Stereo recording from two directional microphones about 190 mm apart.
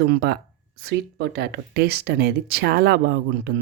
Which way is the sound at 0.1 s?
60° right (ahead or behind).